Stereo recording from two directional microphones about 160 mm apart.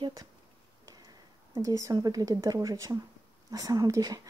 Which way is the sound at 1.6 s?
20° right (ahead or behind).